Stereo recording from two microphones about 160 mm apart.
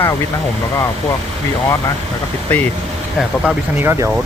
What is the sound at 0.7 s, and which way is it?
Speech, 20° left (ahead or behind).